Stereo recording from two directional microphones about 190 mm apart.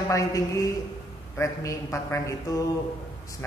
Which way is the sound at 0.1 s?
15° left (ahead or behind).